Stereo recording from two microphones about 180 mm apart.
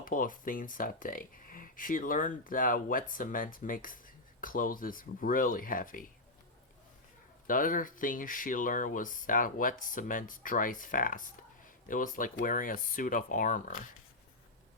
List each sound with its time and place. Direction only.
0.0 s speech: 50° left (ahead or behind)
7.4 s speech: 50° left (ahead or behind)